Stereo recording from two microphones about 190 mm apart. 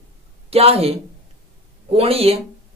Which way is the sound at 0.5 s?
30° right (ahead or behind).